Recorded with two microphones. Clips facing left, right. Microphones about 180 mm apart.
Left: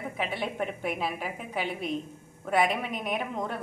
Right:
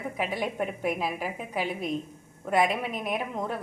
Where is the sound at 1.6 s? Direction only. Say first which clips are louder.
Right 2 dB; 35° right (ahead or behind).